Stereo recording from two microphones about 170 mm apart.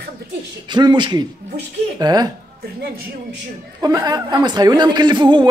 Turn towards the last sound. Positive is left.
turn(degrees=-25)  # may be behind; listen again after turning